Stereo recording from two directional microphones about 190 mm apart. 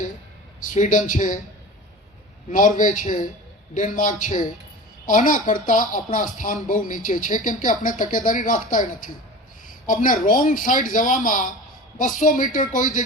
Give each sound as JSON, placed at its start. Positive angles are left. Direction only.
{"t": 0.6, "sound": "speech", "side_deg": 40}
{"t": 2.5, "sound": "a woman's voice", "side_deg": 45}